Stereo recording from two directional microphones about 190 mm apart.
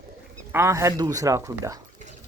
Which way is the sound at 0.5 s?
15° right (ahead or behind).